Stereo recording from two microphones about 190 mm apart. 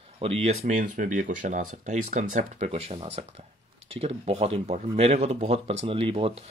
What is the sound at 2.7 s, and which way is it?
Speech, 30° right (ahead or behind).